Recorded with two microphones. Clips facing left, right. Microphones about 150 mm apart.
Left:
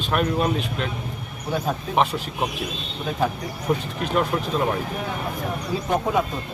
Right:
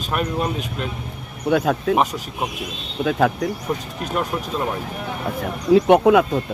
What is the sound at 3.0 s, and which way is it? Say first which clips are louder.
Speech: right 6 dB; 75° right (ahead or behind).